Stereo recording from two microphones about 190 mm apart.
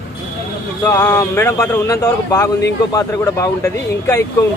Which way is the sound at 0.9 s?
15° left (ahead or behind).